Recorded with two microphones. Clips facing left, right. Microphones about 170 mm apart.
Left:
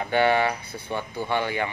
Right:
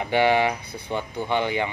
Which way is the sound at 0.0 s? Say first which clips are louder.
Right 1 dB; 15° right (ahead or behind).